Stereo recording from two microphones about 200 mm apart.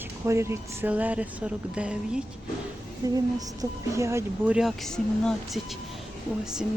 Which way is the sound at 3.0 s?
20° right (ahead or behind).